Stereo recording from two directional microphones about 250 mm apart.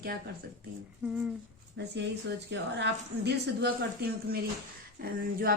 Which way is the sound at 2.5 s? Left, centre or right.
Right.